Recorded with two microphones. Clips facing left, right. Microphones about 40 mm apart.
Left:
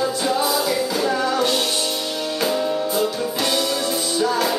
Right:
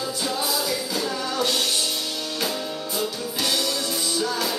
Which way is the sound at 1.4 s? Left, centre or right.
Centre.